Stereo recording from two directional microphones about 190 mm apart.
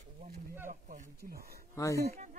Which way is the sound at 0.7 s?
45° right (ahead or behind).